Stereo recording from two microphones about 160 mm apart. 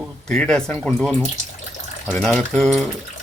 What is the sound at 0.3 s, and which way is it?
Speech, 5° left (ahead or behind).